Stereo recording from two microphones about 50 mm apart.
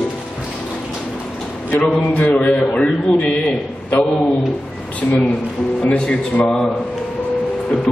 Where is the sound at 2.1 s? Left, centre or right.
Left.